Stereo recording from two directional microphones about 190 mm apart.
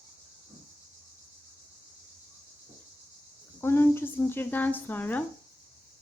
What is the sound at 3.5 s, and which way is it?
Speech, 10° left (ahead or behind).